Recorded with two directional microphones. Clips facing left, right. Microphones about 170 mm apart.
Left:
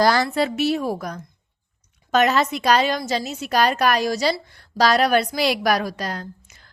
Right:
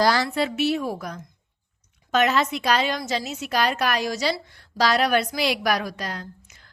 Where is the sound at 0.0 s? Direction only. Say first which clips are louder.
Left 3 dB; 50° left (ahead or behind).